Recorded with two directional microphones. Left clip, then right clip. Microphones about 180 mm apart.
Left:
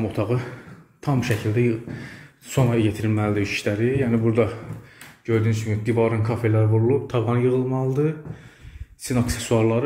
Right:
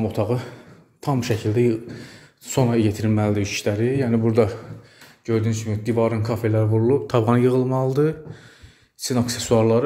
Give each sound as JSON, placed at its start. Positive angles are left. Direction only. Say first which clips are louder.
{"t": 0.0, "sound": "speech", "louder": "right 2 dB", "side_deg": -20}
{"t": 7.1, "sound": "speech", "louder": "right 3 dB", "side_deg": -45}
{"t": 9.0, "sound": "speech", "louder": "right 2 dB", "side_deg": -25}